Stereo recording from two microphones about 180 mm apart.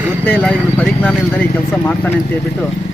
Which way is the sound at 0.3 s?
10° left (ahead or behind).